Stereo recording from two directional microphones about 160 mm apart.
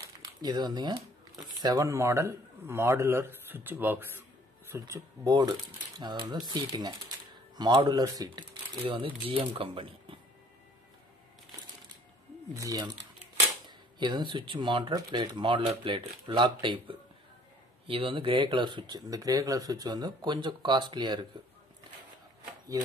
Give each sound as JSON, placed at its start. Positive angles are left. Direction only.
{"t": 0.4, "sound": "a man's voice", "side_deg": -25}
{"t": 12.5, "sound": "speech", "side_deg": -20}